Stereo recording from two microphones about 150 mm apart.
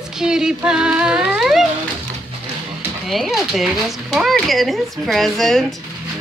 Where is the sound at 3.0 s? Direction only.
Centre (ahead or behind).